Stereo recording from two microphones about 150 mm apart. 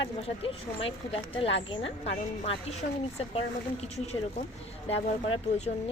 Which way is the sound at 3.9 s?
45° left (ahead or behind).